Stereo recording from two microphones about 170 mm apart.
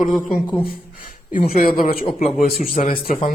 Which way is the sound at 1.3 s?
60° left (ahead or behind).